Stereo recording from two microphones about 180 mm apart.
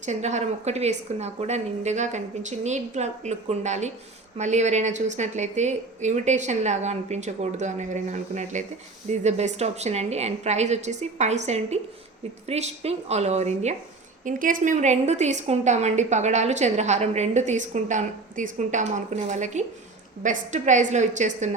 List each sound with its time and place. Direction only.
0.0 s a woman's voice: 40° right (ahead or behind)
14.3 s a woman's voice: 50° right (ahead or behind)